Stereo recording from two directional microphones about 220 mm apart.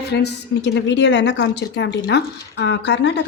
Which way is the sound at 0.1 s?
50° left (ahead or behind).